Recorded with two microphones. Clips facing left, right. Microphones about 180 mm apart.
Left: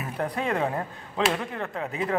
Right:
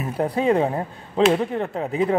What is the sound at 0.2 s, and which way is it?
Speech, 30° right (ahead or behind).